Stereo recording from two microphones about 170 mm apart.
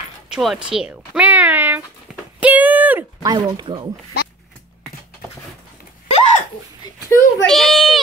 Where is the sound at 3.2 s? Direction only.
25° right (ahead or behind).